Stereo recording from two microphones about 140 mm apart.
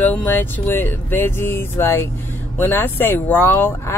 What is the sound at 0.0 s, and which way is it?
Speech, 10° left (ahead or behind).